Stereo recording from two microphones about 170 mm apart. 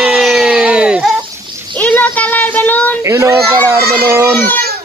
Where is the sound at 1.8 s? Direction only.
10° left (ahead or behind).